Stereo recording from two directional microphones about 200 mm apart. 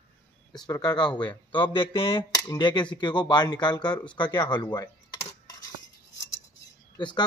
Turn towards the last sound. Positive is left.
turn(degrees=20)  # may be behind; listen again after turning